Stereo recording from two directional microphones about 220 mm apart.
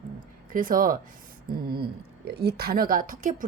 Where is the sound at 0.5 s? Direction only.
40° right (ahead or behind).